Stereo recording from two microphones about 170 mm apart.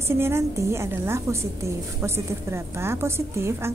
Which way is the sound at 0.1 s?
15° right (ahead or behind).